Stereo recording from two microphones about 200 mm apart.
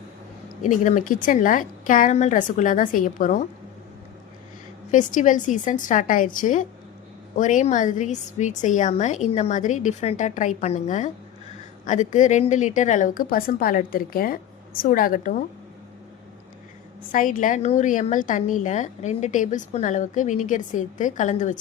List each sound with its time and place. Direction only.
0.6 s a woman's voice: 40° left (ahead or behind)
4.9 s a woman's voice: 40° left (ahead or behind)
17.1 s a woman's voice: 40° left (ahead or behind)